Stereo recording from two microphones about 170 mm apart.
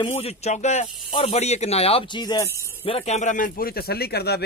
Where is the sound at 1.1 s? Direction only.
30° left (ahead or behind).